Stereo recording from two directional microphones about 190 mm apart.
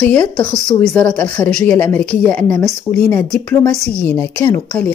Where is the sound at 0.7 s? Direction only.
10° left (ahead or behind).